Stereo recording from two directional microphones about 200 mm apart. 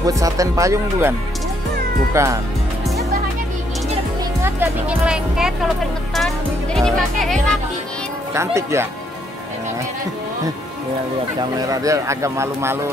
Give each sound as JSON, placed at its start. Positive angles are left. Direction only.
{"t": 0.0, "sound": "speech", "side_deg": -15}
{"t": 2.1, "sound": "speech", "side_deg": -15}
{"t": 4.4, "sound": "speech", "side_deg": -10}
{"t": 8.3, "sound": "speech", "side_deg": -15}
{"t": 11.5, "sound": "speech", "side_deg": -15}